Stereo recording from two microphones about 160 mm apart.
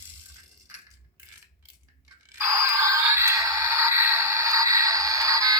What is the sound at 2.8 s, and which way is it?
Music, 20° right (ahead or behind).